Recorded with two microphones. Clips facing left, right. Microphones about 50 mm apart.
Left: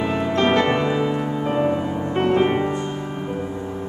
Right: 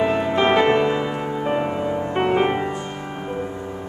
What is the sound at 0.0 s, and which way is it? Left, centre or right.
Music, centre.